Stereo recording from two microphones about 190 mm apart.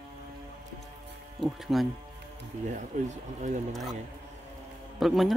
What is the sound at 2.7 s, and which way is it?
Speech, 40° right (ahead or behind).